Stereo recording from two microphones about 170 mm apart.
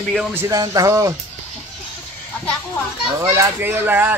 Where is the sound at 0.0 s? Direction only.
5° left (ahead or behind).